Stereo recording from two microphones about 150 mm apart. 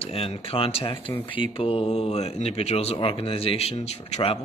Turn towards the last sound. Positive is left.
turn(degrees=45)  # may be behind; listen again after turning